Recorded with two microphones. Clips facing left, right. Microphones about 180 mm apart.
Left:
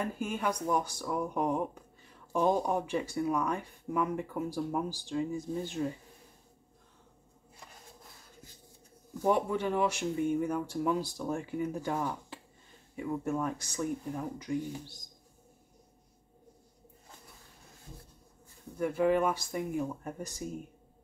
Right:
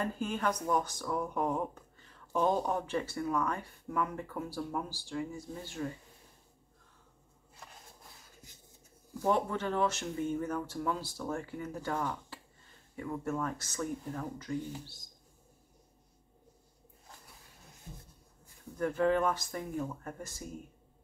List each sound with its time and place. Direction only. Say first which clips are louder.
0.0 s speech: even; 10° left (ahead or behind)
9.2 s speech: left 2 dB; 10° left (ahead or behind)
18.8 s speech: left 2 dB; 10° left (ahead or behind)